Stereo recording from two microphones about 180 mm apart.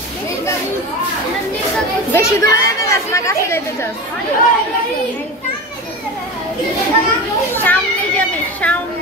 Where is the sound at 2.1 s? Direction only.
15° left (ahead or behind).